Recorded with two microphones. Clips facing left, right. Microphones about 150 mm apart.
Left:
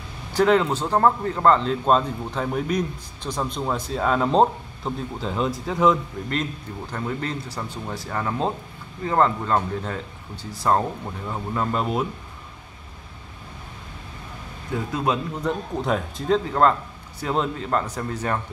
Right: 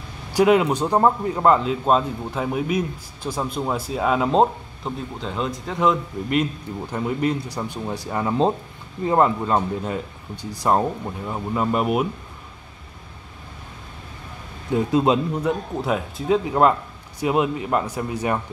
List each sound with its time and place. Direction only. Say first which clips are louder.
0.3 s a man's voice: right 2 dB; 10° right (ahead or behind)
6.9 s a man's voice: right 6 dB; 15° right (ahead or behind)
14.7 s speech: right 6 dB; 20° right (ahead or behind)
15.4 s a man's voice: right 2 dB; 5° right (ahead or behind)